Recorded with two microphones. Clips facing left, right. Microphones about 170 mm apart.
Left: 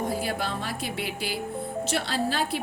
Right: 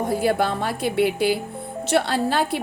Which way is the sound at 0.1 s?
60° right (ahead or behind).